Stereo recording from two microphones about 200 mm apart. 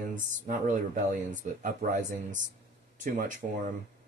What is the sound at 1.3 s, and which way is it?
Speech, 40° right (ahead or behind).